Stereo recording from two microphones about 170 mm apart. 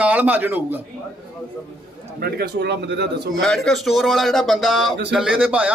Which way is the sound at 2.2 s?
70° right (ahead or behind).